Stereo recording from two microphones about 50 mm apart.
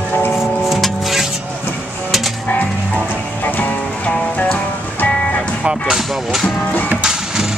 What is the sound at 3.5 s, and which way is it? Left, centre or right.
Music, left.